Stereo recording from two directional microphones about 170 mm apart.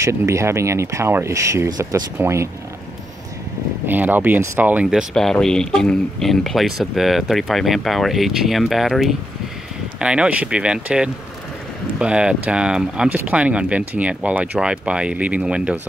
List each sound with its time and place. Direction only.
0.0 s speech: 15° right (ahead or behind)
3.8 s speech: 10° right (ahead or behind)
5.1 s speech: 5° left (ahead or behind)